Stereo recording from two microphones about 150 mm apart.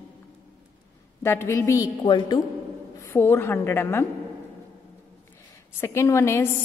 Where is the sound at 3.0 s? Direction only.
15° left (ahead or behind).